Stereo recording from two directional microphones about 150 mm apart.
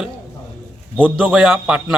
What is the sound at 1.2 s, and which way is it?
Speech, 5° right (ahead or behind).